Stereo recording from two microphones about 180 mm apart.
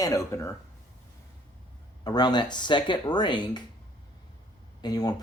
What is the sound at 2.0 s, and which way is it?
Speech, 25° left (ahead or behind).